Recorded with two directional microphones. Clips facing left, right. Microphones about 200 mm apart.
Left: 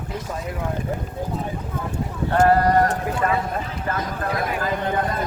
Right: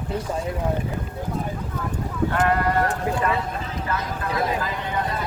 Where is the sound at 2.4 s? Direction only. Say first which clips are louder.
Left 6 dB; 40° left (ahead or behind).